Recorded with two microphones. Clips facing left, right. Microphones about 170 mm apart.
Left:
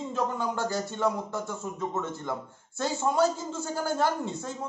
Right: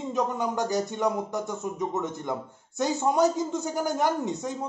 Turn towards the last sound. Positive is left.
turn(degrees=-15)  # may be behind; listen again after turning